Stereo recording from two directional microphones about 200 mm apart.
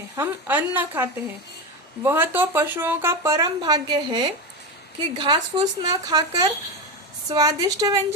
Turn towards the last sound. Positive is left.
turn(degrees=-20)  # may be behind; listen again after turning